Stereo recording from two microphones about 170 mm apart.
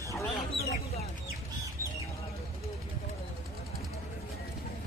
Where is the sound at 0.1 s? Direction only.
15° left (ahead or behind).